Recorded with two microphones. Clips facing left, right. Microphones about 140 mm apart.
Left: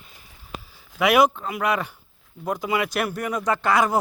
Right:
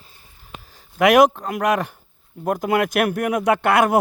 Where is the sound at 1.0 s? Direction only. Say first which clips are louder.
Right 4 dB; 50° right (ahead or behind).